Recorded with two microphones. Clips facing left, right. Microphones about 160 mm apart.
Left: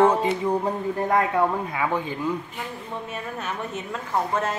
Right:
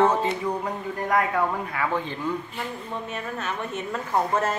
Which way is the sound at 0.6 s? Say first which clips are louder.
Left 3 dB; 30° left (ahead or behind).